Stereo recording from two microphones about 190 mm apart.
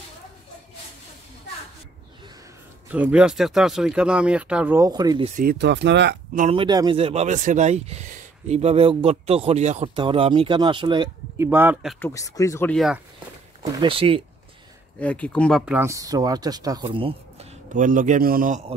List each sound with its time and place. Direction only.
2.9 s speech: 5° right (ahead or behind)
5.3 s speech: 50° right (ahead or behind); by 6.1 s 65° right (ahead or behind)
6.5 s speech: 25° right (ahead or behind)
11.3 s speech: 10° right (ahead or behind)
12.0 s speech: 15° left (ahead or behind)
12.7 s speech: centre (ahead or behind)
13.7 s speech: 30° right (ahead or behind)
15.0 s speech: 5° left (ahead or behind)
15.6 s speech: 10° right (ahead or behind); by 17.5 s 30° right (ahead or behind)
17.7 s a man's voice: 45° right (ahead or behind)